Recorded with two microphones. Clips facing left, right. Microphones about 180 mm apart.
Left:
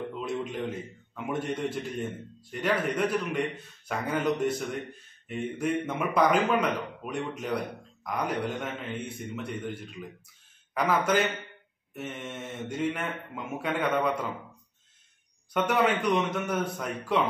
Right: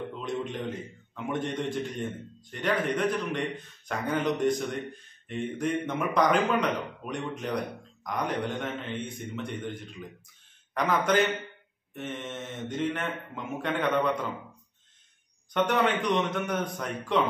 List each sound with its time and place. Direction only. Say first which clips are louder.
0.2 s a sound: even; 5° left (ahead or behind)
1.1 s a man's voice: even; 5° left (ahead or behind)
15.5 s speech: even; 5° left (ahead or behind)